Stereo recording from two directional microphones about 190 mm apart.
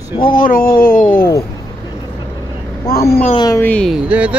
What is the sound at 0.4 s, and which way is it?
Speech, 45° left (ahead or behind).